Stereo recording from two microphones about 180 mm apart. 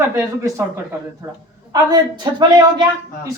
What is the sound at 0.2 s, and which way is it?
Speech, 15° right (ahead or behind).